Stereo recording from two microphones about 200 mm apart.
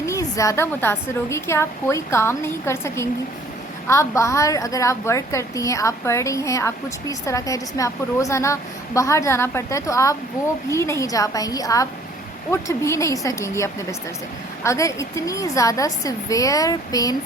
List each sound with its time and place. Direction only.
0.0 s a woman's voice: 15° left (ahead or behind)